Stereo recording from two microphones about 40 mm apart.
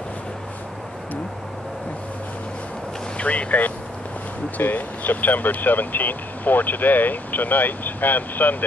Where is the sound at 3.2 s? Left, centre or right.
Left.